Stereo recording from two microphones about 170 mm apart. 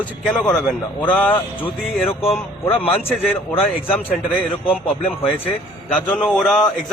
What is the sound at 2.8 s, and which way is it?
Speech, 35° left (ahead or behind).